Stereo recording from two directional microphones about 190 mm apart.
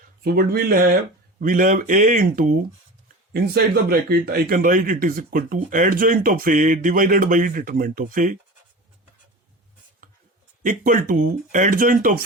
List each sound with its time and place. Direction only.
0.2 s speech: 55° right (ahead or behind)
10.6 s speech: 45° right (ahead or behind)